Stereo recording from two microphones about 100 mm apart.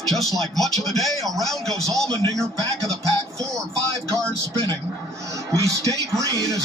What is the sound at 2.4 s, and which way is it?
Speech, 35° right (ahead or behind).